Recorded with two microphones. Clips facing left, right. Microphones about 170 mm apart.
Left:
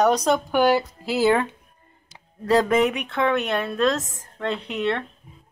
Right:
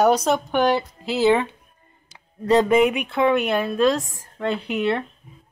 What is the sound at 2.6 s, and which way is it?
Speech, 10° right (ahead or behind).